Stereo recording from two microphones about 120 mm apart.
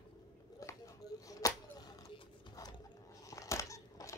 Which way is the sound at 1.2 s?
30° left (ahead or behind).